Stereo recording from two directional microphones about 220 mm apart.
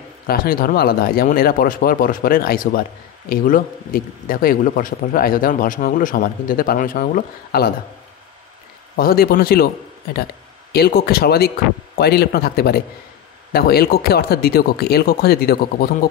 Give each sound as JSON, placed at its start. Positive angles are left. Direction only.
{"t": 0.3, "sound": "speech", "side_deg": 40}
{"t": 8.9, "sound": "speech", "side_deg": 40}
{"t": 10.7, "sound": "speech", "side_deg": 45}